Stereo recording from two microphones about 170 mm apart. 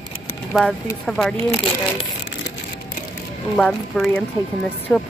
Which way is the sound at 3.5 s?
5° left (ahead or behind).